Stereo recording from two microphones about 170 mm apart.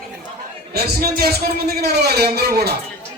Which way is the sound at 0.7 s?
65° right (ahead or behind).